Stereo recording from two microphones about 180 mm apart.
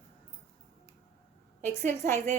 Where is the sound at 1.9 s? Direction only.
10° left (ahead or behind).